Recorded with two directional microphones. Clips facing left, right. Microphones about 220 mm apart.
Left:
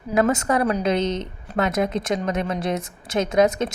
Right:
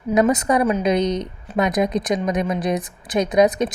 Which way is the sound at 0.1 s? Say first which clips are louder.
Right 3 dB; 20° right (ahead or behind).